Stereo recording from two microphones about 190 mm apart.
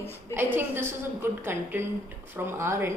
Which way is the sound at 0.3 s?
10° right (ahead or behind).